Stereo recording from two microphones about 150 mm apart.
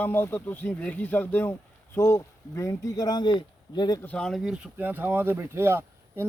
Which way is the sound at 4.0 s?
5° left (ahead or behind).